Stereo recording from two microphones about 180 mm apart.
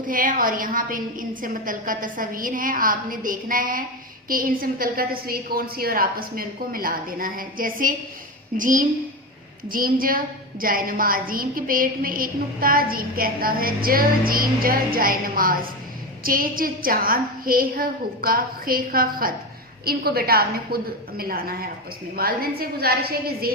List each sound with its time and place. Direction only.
0.1 s a woman's voice: 50° right (ahead or behind)